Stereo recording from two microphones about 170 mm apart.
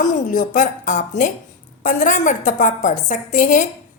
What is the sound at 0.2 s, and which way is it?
A woman's voice, 50° left (ahead or behind).